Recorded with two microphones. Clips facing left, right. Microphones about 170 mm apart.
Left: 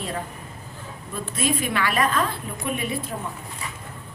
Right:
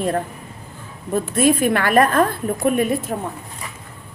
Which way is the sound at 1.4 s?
50° right (ahead or behind).